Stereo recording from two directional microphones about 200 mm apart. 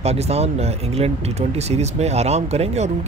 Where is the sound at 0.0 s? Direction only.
30° right (ahead or behind).